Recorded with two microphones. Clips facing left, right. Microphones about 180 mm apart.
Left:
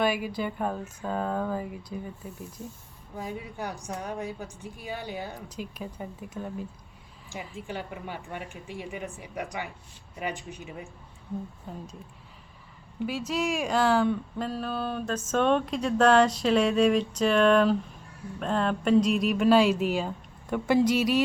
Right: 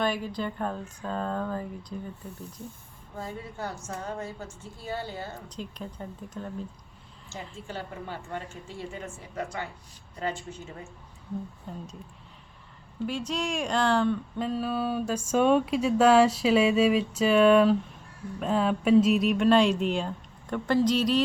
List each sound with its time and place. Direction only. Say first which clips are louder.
0.0 s a woman's voice: left 2 dB; 10° left (ahead or behind)
11.7 s speech: even; 5° left (ahead or behind)
13.1 s speech: left 2 dB; 5° left (ahead or behind)